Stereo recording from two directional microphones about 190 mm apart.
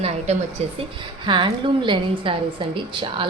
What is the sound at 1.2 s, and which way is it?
A woman's voice, 25° right (ahead or behind).